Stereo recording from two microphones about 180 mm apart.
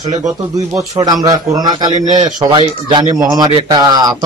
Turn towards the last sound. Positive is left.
turn(degrees=-20)  # may be behind; listen again after turning